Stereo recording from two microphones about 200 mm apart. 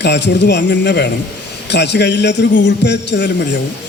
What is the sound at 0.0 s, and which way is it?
A man's voice, 60° left (ahead or behind).